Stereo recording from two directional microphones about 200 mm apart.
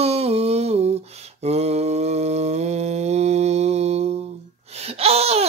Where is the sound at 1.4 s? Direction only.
30° right (ahead or behind).